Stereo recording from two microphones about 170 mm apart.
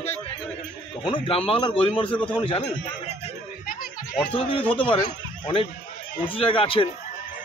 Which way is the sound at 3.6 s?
55° left (ahead or behind).